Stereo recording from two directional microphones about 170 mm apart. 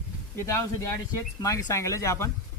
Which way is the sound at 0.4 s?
15° left (ahead or behind).